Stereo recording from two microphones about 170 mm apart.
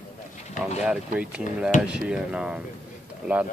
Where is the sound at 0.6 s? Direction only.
5° right (ahead or behind).